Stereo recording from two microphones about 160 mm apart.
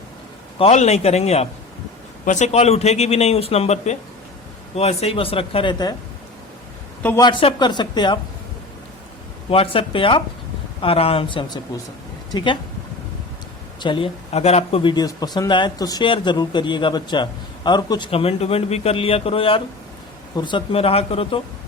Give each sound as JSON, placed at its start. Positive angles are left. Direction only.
{"t": 0.6, "sound": "speech", "side_deg": 45}
{"t": 7.2, "sound": "speech", "side_deg": 30}
{"t": 9.5, "sound": "speech", "side_deg": 35}
{"t": 13.8, "sound": "speech", "side_deg": 30}